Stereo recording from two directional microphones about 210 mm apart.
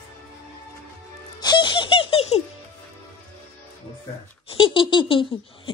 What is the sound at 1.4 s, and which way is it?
Baby laughter, 20° left (ahead or behind).